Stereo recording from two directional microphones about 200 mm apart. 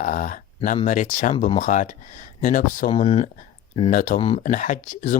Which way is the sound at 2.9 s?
30° left (ahead or behind).